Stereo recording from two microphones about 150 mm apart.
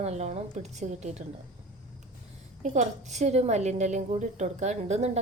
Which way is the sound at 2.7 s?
50° right (ahead or behind).